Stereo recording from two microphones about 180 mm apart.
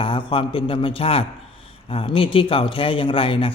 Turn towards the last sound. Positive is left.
turn(degrees=30)  # may be behind; listen again after turning